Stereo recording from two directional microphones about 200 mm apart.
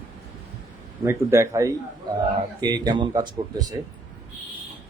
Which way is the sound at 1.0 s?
15° right (ahead or behind).